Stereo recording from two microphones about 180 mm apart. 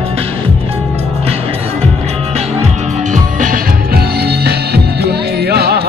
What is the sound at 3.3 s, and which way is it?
Music, 50° right (ahead or behind).